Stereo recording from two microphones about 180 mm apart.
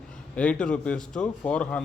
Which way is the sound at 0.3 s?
5° left (ahead or behind).